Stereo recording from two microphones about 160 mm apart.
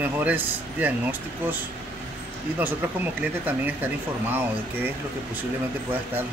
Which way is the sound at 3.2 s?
10° right (ahead or behind).